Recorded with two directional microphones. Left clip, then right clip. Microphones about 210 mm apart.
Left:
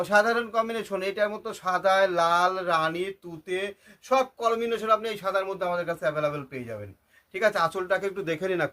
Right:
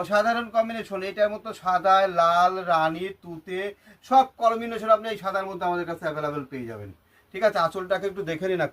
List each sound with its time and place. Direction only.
0.0 s a man's voice: 50° left (ahead or behind); by 8.7 s 30° left (ahead or behind)